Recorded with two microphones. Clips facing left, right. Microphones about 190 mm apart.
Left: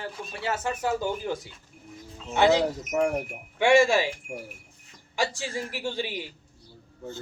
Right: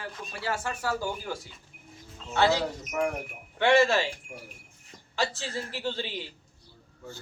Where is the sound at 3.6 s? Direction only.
10° left (ahead or behind).